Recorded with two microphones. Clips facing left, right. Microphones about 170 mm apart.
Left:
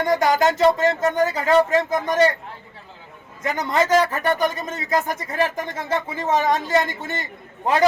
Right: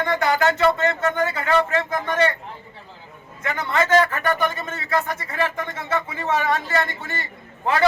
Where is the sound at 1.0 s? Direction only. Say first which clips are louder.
Left 3 dB; 40° left (ahead or behind).